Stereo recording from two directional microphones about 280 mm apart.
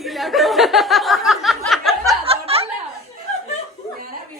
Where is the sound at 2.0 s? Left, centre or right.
Right.